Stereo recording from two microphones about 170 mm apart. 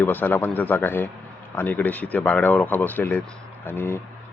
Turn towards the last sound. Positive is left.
turn(degrees=10)  # may be behind; listen again after turning